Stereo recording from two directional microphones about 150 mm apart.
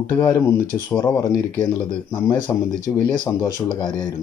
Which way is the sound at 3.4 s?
30° left (ahead or behind).